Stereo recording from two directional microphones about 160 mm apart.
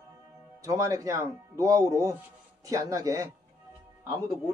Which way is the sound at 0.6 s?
20° right (ahead or behind).